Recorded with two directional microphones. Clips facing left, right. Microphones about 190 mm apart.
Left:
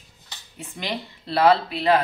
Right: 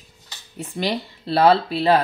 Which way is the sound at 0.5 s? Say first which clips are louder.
Right 6 dB; 35° right (ahead or behind).